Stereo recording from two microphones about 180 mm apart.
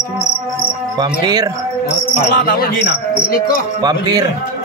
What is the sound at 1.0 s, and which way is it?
Speech, 25° right (ahead or behind).